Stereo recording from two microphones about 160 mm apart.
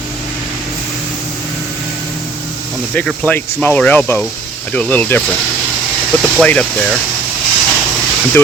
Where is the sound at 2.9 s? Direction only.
10° left (ahead or behind).